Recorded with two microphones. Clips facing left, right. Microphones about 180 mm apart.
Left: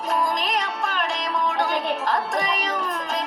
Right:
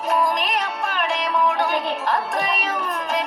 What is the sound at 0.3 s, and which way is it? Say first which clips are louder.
Music: right 1 dB; 55° right (ahead or behind).